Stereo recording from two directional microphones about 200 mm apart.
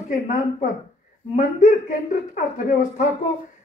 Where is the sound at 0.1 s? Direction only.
40° left (ahead or behind).